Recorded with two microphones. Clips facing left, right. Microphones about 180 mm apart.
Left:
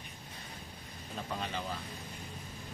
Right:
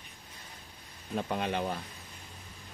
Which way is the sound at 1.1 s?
60° right (ahead or behind).